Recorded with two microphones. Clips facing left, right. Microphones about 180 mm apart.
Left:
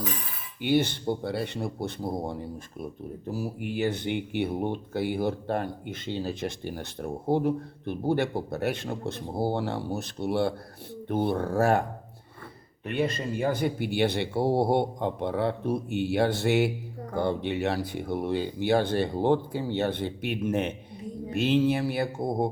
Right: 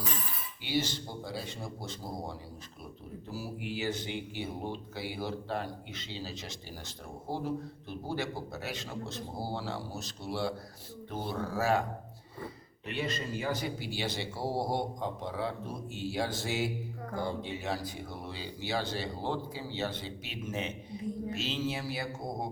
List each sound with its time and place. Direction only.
0.6 s speech: 55° left (ahead or behind)